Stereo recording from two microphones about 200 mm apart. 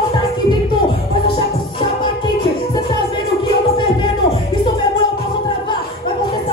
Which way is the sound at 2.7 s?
25° left (ahead or behind).